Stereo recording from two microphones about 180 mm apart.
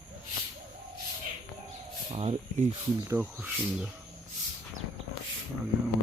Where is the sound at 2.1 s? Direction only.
35° right (ahead or behind).